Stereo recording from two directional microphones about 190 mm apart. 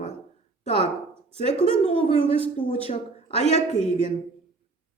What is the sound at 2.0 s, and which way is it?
Speech, 30° left (ahead or behind).